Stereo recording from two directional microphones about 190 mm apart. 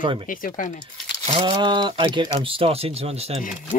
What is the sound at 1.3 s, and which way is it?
Speech, 25° right (ahead or behind).